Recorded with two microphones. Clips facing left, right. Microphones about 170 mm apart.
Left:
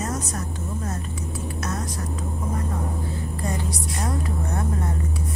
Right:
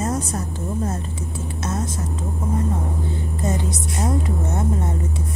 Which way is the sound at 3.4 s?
20° right (ahead or behind).